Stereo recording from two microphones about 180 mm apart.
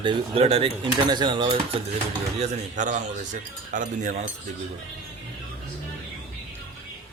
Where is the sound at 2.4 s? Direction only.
45° right (ahead or behind).